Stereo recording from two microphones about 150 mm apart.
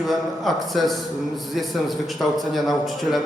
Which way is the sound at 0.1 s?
Centre (ahead or behind).